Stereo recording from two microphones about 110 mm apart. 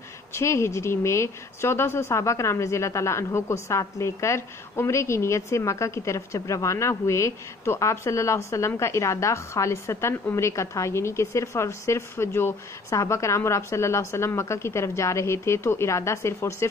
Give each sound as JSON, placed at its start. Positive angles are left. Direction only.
{"t": 0.3, "sound": "speech", "side_deg": 25}